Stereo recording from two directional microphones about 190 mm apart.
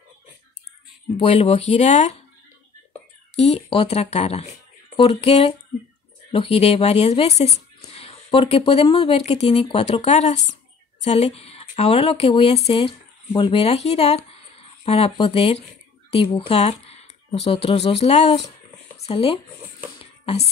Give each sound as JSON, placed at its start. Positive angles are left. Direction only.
{"t": 1.1, "sound": "speech", "side_deg": 30}
{"t": 3.3, "sound": "speech", "side_deg": 30}
{"t": 20.0, "sound": "a sound", "side_deg": 30}